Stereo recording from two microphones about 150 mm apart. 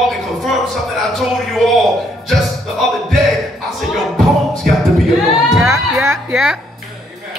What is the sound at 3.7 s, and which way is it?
Music, centre (ahead or behind).